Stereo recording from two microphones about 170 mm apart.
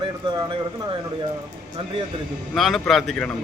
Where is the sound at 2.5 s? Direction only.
Centre (ahead or behind).